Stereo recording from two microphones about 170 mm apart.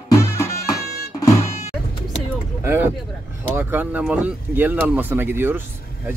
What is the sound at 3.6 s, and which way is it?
Speech, 10° right (ahead or behind).